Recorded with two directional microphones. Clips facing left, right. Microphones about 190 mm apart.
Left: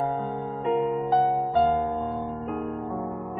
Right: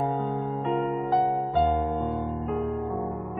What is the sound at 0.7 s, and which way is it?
Music, centre (ahead or behind).